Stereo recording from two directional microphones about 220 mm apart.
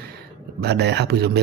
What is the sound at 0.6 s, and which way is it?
Speech, 50° right (ahead or behind).